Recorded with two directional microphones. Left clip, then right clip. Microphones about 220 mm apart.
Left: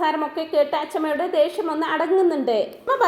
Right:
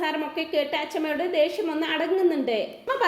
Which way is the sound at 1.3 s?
20° left (ahead or behind).